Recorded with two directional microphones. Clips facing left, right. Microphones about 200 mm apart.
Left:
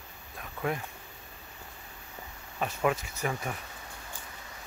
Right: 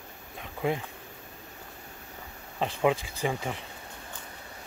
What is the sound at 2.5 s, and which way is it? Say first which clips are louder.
Speech: right 3 dB; 25° right (ahead or behind).